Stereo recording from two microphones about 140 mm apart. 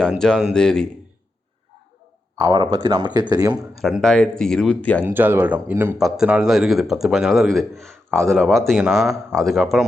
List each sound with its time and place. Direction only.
0.1 s a man's voice: 5° left (ahead or behind)
2.4 s speech: 35° right (ahead or behind)
3.8 s a man's voice: centre (ahead or behind)
5.0 s speech: 15° right (ahead or behind)
6.0 s a man's voice: 5° right (ahead or behind)